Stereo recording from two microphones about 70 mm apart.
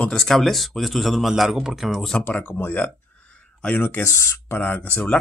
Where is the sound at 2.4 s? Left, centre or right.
Left.